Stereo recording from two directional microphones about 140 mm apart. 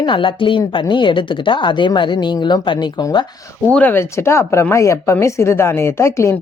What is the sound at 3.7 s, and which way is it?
Speech, 10° left (ahead or behind).